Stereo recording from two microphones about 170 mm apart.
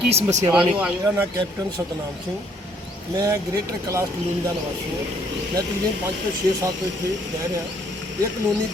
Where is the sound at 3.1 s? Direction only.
20° right (ahead or behind).